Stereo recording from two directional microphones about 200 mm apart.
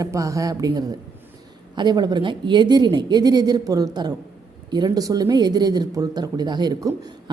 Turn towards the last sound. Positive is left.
turn(degrees=-20)  # may be behind; listen again after turning